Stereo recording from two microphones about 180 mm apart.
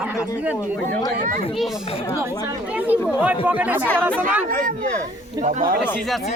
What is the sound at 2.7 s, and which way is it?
Speech, 10° right (ahead or behind).